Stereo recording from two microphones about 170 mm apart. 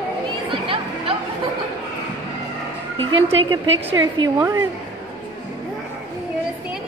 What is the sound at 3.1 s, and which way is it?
Speech, 35° right (ahead or behind).